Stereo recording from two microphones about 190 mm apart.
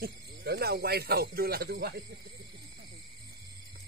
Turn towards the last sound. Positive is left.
turn(degrees=-60)  # may be behind; listen again after turning